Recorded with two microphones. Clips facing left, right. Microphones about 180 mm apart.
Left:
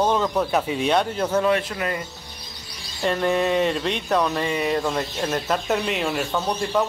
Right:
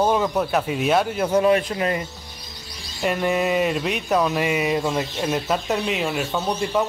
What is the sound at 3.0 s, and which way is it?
Speech, 10° right (ahead or behind).